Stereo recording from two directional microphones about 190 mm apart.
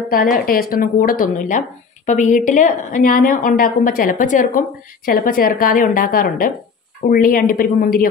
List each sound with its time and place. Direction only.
0.1 s a woman's voice: 50° left (ahead or behind)